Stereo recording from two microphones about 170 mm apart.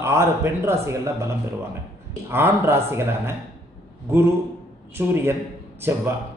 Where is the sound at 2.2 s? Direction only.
15° right (ahead or behind).